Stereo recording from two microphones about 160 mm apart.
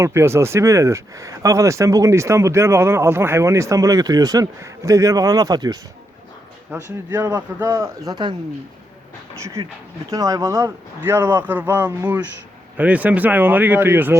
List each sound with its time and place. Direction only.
0.0 s speech: 15° right (ahead or behind)
9.4 s speech: 20° right (ahead or behind)